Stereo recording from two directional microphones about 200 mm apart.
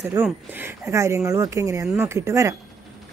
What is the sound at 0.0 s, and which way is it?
Speech, 10° right (ahead or behind).